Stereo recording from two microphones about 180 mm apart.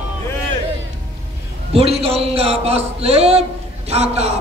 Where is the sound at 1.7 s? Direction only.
35° right (ahead or behind).